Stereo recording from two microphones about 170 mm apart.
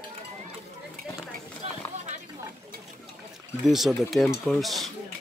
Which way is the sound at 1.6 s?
35° right (ahead or behind).